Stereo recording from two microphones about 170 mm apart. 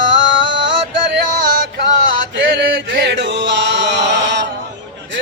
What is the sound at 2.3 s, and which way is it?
Chant, 90° right.